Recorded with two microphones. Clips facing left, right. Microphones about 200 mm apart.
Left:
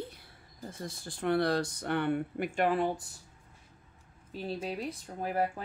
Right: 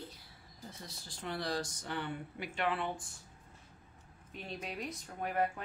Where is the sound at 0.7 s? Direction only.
50° left (ahead or behind).